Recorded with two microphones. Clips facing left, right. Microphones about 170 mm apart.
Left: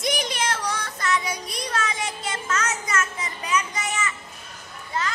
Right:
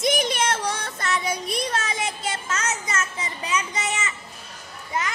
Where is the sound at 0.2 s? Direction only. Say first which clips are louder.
Right 3 dB; 25° right (ahead or behind).